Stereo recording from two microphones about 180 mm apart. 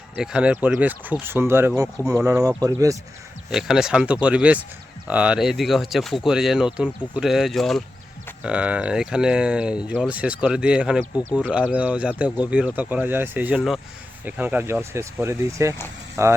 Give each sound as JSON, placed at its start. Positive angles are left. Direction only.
{"t": 0.2, "sound": "speech", "side_deg": -5}
{"t": 3.5, "sound": "speech", "side_deg": 0}